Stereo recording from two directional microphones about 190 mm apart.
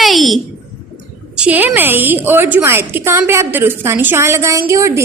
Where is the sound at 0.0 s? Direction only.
Centre (ahead or behind).